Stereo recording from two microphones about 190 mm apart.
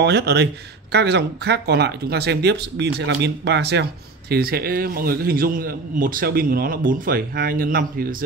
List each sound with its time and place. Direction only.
0.0 s a man's voice: 60° right (ahead or behind)